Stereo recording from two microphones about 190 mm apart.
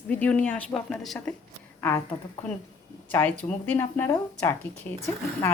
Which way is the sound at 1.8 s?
15° left (ahead or behind).